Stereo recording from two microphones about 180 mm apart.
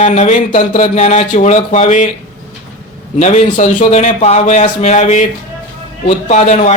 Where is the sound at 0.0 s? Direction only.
40° left (ahead or behind).